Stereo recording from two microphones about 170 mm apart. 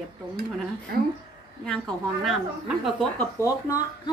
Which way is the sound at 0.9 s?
65° right (ahead or behind).